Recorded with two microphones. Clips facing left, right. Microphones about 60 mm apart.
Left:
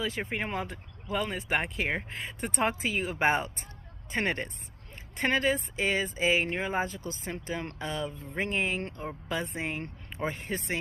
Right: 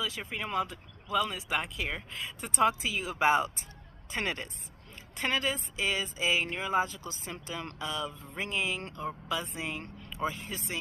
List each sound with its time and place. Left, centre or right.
0.0 s speech: left